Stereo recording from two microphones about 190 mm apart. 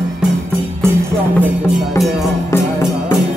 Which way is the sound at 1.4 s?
10° left (ahead or behind).